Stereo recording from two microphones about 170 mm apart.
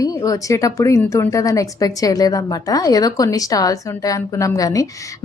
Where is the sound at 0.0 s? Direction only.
20° left (ahead or behind).